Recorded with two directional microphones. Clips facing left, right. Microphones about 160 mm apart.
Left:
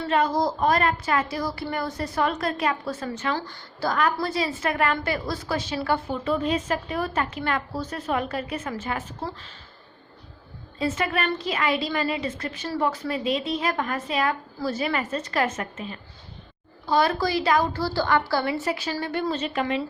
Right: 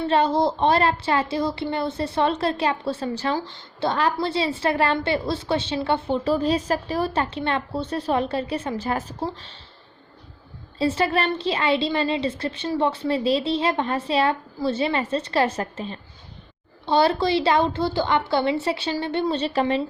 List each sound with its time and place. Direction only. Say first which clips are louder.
0.0 s a woman's voice: right 3 dB; 30° right (ahead or behind)
10.8 s a woman's voice: right 4 dB; 30° right (ahead or behind)